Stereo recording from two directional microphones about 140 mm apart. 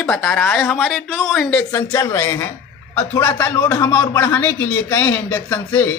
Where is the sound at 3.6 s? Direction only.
30° left (ahead or behind).